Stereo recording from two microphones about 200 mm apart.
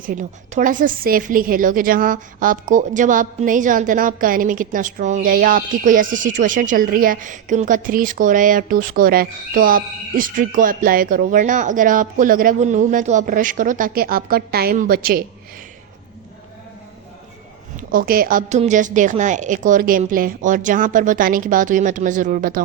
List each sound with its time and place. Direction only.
0.0 s a woman's voice: 40° right (ahead or behind)
17.7 s a woman's voice: 45° right (ahead or behind)